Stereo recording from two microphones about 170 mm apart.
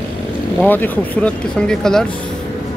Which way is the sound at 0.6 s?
10° left (ahead or behind).